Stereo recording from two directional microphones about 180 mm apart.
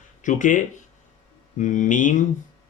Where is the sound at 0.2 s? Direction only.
45° left (ahead or behind).